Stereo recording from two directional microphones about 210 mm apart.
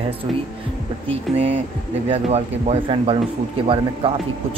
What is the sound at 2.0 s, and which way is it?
A man's voice, 30° right (ahead or behind).